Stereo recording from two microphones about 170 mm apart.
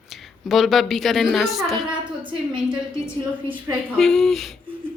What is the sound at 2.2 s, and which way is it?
Speech, 30° right (ahead or behind).